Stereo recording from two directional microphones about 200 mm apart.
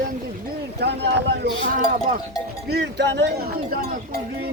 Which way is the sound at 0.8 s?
55° right (ahead or behind).